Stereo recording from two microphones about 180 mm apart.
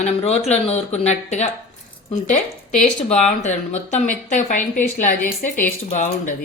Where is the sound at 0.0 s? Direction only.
35° left (ahead or behind).